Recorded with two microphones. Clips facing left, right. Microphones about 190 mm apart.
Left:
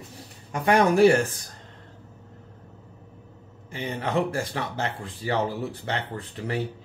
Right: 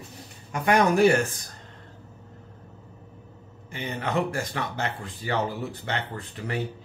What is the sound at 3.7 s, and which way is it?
Speech, 30° left (ahead or behind).